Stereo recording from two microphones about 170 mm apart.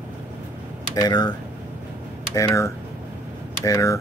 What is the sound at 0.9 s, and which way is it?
Speech, 25° left (ahead or behind).